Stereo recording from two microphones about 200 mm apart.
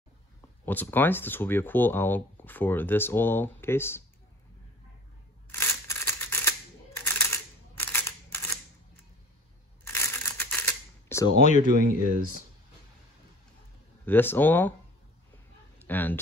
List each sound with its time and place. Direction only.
0.7 s speech: 10° left (ahead or behind)
5.5 s scissors: 10° left (ahead or behind)
7.1 s camera: 10° left (ahead or behind)
9.9 s a sound: 10° left (ahead or behind)
11.4 s speech: 40° left (ahead or behind)
11.7 s speech: 45° right (ahead or behind)
14.0 s speech: 10° left (ahead or behind)
15.9 s speech: 10° left (ahead or behind)